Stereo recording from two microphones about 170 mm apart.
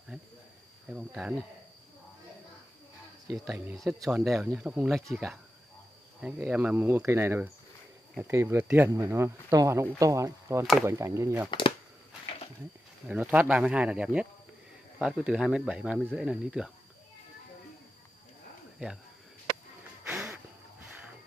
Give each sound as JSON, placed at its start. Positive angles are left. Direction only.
{"t": 0.9, "sound": "speech", "side_deg": -5}
{"t": 4.1, "sound": "speech", "side_deg": 0}
{"t": 6.4, "sound": "speech", "side_deg": -10}
{"t": 13.1, "sound": "speech", "side_deg": -10}
{"t": 18.8, "sound": "speech", "side_deg": -5}
{"t": 20.1, "sound": "a sound", "side_deg": -5}